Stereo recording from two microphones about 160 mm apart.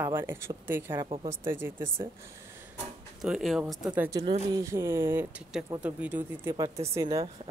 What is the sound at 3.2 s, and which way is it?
Speech, centre (ahead or behind).